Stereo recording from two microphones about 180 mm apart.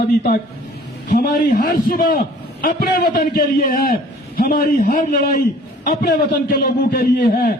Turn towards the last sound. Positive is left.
turn(degrees=45)  # may be behind; listen again after turning